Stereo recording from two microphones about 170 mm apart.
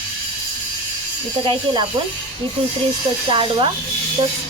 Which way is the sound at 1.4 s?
25° right (ahead or behind).